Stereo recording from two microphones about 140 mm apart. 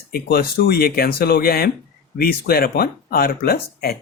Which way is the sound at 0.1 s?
90° left.